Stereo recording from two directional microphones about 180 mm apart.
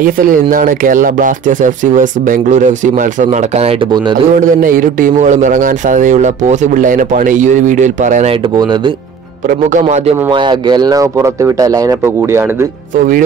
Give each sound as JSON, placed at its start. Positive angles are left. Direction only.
{"t": 0.0, "sound": "a man's voice", "side_deg": -50}
{"t": 9.5, "sound": "a man's voice", "side_deg": -45}
{"t": 10.3, "sound": "speech", "side_deg": -25}